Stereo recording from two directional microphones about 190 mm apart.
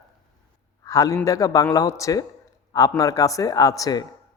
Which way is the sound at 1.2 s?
15° left (ahead or behind).